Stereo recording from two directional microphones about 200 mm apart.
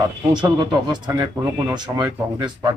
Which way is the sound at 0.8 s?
20° right (ahead or behind).